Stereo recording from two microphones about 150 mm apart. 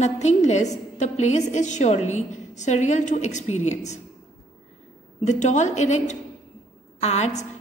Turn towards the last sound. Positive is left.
turn(degrees=50)  # may be behind; listen again after turning